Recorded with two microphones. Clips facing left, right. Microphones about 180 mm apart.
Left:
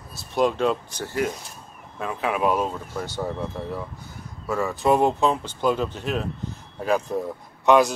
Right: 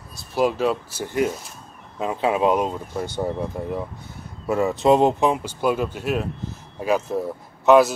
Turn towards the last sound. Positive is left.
turn(degrees=-5)  # may be behind; listen again after turning